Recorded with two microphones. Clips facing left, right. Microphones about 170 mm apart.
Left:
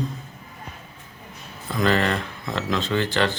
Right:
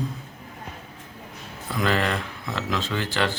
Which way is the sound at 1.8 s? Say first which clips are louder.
Left 3 dB; 5° right (ahead or behind).